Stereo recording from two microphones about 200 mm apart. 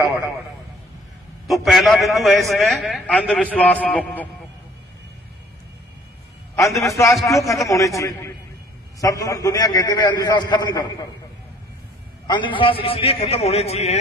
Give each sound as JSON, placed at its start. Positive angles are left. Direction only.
{"t": 1.5, "sound": "a man's voice", "side_deg": 0}
{"t": 6.5, "sound": "a man's voice", "side_deg": 15}
{"t": 12.3, "sound": "a man's voice", "side_deg": 25}